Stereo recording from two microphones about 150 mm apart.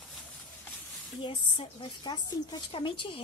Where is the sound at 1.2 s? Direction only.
35° left (ahead or behind).